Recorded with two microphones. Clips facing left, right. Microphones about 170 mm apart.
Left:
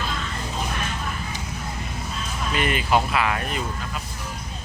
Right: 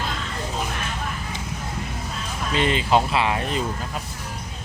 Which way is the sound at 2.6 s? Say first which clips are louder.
Right 2 dB; 25° right (ahead or behind).